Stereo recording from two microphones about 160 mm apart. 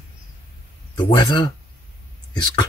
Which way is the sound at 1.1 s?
25° left (ahead or behind).